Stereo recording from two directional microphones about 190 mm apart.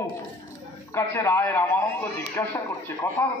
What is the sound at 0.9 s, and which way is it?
A man's voice, 10° left (ahead or behind).